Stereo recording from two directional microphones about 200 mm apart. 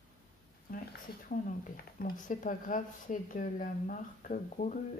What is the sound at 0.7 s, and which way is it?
Speech, 45° left (ahead or behind).